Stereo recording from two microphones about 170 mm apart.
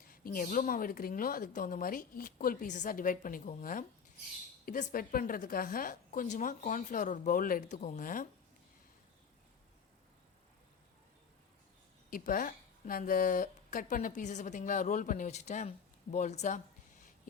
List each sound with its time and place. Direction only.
0.0 s a woman's voice: 55° left (ahead or behind)
12.1 s a woman's voice: 55° left (ahead or behind)